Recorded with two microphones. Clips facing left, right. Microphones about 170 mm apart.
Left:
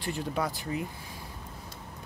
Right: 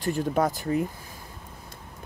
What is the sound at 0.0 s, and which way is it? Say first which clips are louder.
Speech: right 7 dB; 45° right (ahead or behind).